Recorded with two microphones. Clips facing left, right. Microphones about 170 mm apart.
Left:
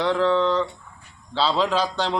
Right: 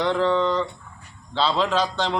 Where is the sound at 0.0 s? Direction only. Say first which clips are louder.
Left 1 dB; centre (ahead or behind).